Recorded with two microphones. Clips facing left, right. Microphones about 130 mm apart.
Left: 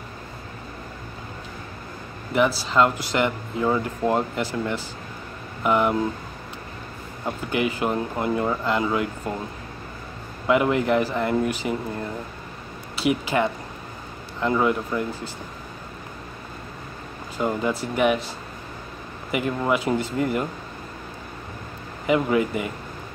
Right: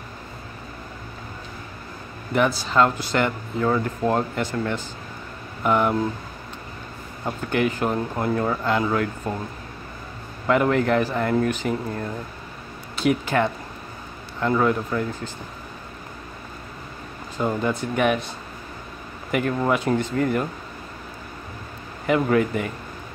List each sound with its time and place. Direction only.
2.3 s speech: 5° left (ahead or behind)
7.2 s speech: 5° left (ahead or behind)
10.4 s speech: 5° left (ahead or behind)
12.9 s a sound: 5° left (ahead or behind)
14.4 s speech: 5° left (ahead or behind)
17.4 s speech: 5° left (ahead or behind)
19.3 s speech: 5° left (ahead or behind)
22.0 s speech: 5° left (ahead or behind)